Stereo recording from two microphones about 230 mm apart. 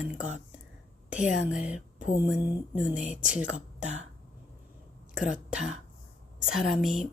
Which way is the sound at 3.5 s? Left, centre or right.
Right.